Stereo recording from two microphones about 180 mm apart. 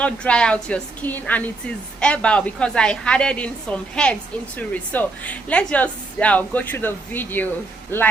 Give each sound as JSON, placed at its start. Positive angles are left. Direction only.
{"t": 0.0, "sound": "a woman's voice", "side_deg": 5}